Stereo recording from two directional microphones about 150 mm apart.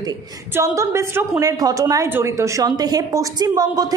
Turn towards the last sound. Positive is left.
turn(degrees=-25)  # may be behind; listen again after turning